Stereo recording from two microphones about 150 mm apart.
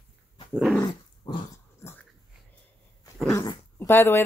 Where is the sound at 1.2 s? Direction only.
30° left (ahead or behind).